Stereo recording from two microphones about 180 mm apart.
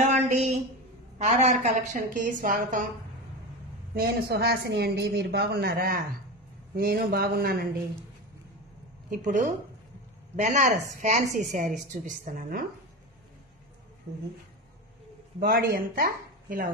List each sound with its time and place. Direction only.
0.1 s a sound: 40° right (ahead or behind)
1.1 s a woman's voice: 40° right (ahead or behind)
3.9 s speech: 60° right (ahead or behind)
9.1 s speech: 45° right (ahead or behind)
15.4 s speech: 55° right (ahead or behind)